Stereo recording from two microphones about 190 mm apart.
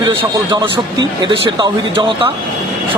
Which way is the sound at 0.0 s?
25° right (ahead or behind).